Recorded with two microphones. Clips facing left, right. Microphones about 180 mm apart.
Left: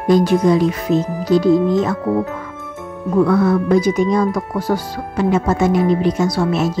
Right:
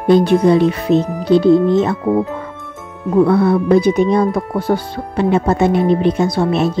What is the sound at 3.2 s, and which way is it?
Speech, 30° right (ahead or behind).